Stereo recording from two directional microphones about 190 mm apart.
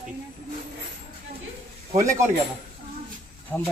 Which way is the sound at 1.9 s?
15° right (ahead or behind).